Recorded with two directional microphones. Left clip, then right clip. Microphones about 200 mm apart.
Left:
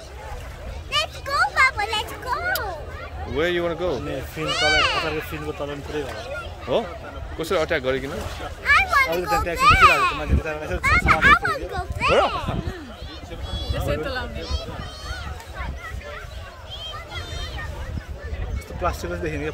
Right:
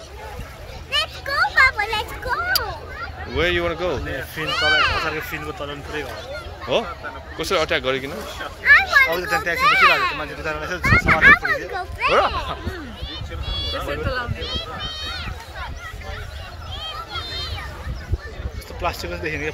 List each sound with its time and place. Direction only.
0.9 s a sound: 40° left (ahead or behind)
3.3 s speech: 10° left (ahead or behind)
4.4 s a child's voice: 35° left (ahead or behind)
6.7 s speech: 10° left (ahead or behind)
8.6 s a child's voice: 40° left (ahead or behind)
10.4 s a child's voice: 45° left (ahead or behind); by 12.4 s 30° left (ahead or behind)
13.7 s speech: 55° left (ahead or behind)
18.8 s speech: 45° left (ahead or behind)